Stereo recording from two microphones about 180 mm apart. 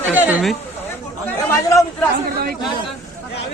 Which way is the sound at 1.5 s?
15° left (ahead or behind).